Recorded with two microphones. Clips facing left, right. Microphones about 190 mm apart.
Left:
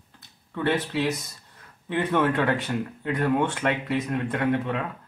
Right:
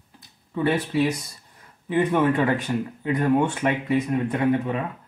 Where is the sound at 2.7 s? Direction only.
15° right (ahead or behind).